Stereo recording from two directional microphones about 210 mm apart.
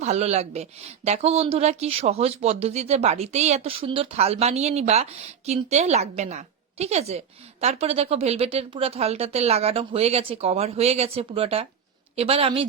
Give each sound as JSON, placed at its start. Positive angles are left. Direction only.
{"t": 0.0, "sound": "a woman's voice", "side_deg": -30}